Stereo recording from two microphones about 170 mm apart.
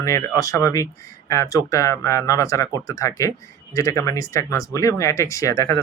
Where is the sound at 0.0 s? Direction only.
20° left (ahead or behind).